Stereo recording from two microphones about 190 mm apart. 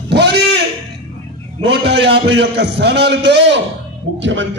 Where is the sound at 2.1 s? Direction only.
65° right (ahead or behind).